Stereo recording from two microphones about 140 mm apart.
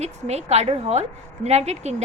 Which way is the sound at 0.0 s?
50° right (ahead or behind).